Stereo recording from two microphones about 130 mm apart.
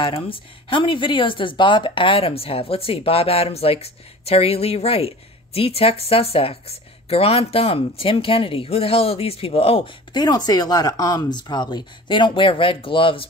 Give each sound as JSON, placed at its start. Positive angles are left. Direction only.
{"t": 0.0, "sound": "speech", "side_deg": 40}
{"t": 10.1, "sound": "speech", "side_deg": 30}